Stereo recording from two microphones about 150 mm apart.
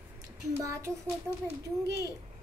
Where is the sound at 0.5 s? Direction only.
20° right (ahead or behind).